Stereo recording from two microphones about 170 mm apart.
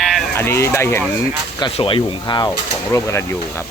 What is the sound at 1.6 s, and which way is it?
Speech, 30° left (ahead or behind).